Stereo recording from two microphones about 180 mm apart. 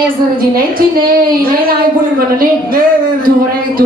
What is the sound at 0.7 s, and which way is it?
A woman's voice, 55° right (ahead or behind).